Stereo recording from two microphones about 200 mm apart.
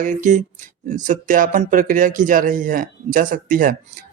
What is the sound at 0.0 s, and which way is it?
Speech, 40° right (ahead or behind).